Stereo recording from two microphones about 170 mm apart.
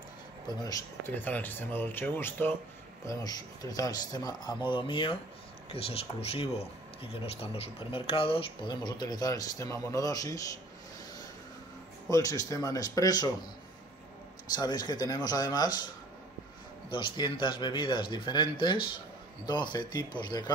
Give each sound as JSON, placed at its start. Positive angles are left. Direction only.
{"t": 0.6, "sound": "a man's voice", "side_deg": 20}
{"t": 1.1, "sound": "a man's voice", "side_deg": 10}
{"t": 12.1, "sound": "a man's voice", "side_deg": 20}
{"t": 14.5, "sound": "a man's voice", "side_deg": 25}
{"t": 16.9, "sound": "a man's voice", "side_deg": 30}